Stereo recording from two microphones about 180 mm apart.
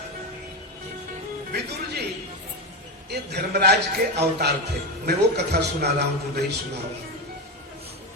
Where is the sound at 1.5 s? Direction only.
65° right (ahead or behind).